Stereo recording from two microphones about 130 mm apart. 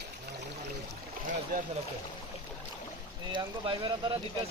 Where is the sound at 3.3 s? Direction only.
35° right (ahead or behind).